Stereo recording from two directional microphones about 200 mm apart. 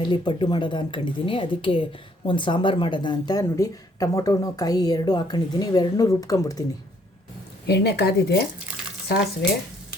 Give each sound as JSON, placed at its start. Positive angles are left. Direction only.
{"t": 0.0, "sound": "speech", "side_deg": 25}
{"t": 7.7, "sound": "a woman's voice", "side_deg": 55}